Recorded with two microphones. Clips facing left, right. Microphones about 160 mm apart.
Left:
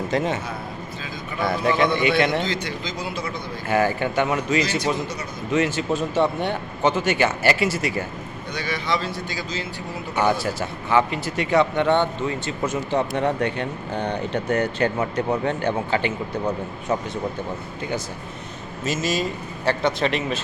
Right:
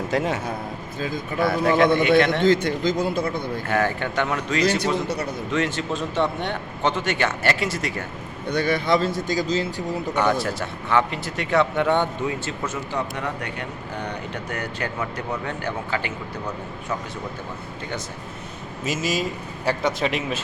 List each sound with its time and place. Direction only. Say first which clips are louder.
0.1 s a man's voice: even; 5° right (ahead or behind)
1.4 s a man's voice: right 2 dB; centre (ahead or behind)
2.4 s speech: right 8 dB; 50° right (ahead or behind)
3.7 s a man's voice: left 4 dB; 5° left (ahead or behind)
8.4 s speech: right 6 dB; 55° right (ahead or behind)
10.2 s a man's voice: left 2 dB; 5° left (ahead or behind)
12.6 s speech: left 7 dB; 25° left (ahead or behind)
18.9 s a man's voice: left 1 dB; 10° right (ahead or behind)